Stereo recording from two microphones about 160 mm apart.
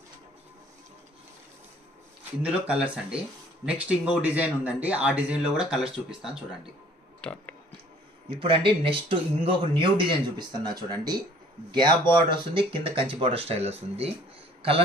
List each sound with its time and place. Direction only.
2.4 s speech: 10° right (ahead or behind)
8.4 s speech: 30° right (ahead or behind)